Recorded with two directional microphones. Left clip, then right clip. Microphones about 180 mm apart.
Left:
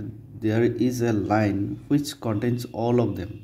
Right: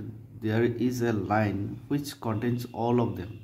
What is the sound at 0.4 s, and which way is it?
Speech, 15° left (ahead or behind).